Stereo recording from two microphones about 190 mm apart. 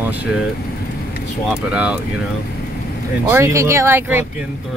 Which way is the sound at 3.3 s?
15° right (ahead or behind).